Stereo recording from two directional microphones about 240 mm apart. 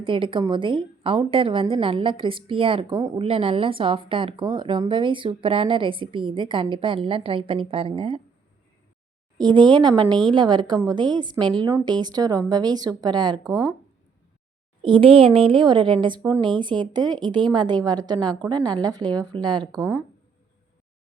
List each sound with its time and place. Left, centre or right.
0.0 s a woman's voice: right
9.4 s a woman's voice: centre
14.8 s a woman's voice: right